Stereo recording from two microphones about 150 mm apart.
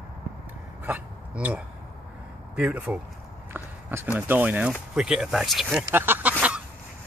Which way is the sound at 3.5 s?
15° right (ahead or behind).